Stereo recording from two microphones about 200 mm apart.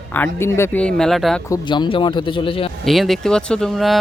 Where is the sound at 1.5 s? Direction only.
25° left (ahead or behind).